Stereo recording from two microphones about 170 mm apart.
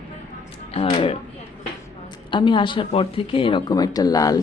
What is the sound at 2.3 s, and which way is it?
Speech, 30° left (ahead or behind).